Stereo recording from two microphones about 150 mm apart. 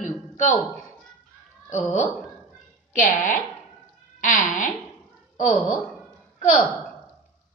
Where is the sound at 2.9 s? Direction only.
60° left (ahead or behind).